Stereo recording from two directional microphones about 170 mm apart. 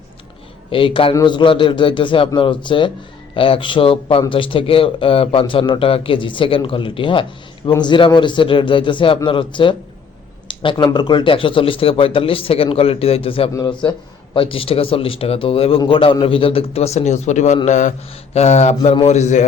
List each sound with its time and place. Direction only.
0.7 s a man's voice: 30° left (ahead or behind)
13.5 s a man's voice: 25° left (ahead or behind); by 19.5 s 45° left (ahead or behind)